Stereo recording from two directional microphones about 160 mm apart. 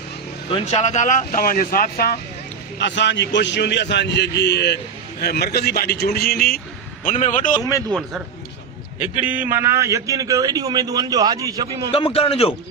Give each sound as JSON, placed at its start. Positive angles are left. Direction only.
{"t": 0.5, "sound": "speech", "side_deg": 45}
{"t": 2.7, "sound": "a man's voice", "side_deg": 90}
{"t": 5.2, "sound": "a man's voice", "side_deg": 80}
{"t": 7.0, "sound": "a man's voice", "side_deg": 55}
{"t": 9.2, "sound": "a man's voice", "side_deg": -10}
{"t": 11.9, "sound": "a man's voice", "side_deg": 35}